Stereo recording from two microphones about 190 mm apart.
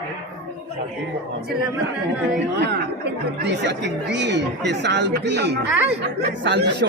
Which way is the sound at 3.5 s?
65° right (ahead or behind).